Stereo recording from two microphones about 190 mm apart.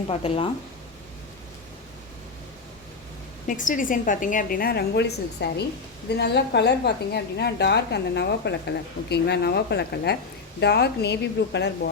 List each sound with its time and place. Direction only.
0.1 s speech: 30° left (ahead or behind)
3.4 s a woman's voice: 45° left (ahead or behind); by 11.7 s 65° left (ahead or behind)